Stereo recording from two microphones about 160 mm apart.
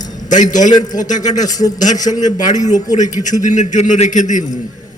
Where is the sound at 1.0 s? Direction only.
50° left (ahead or behind).